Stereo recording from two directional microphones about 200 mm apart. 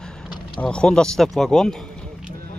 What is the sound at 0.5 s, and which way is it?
Speech, 5° left (ahead or behind).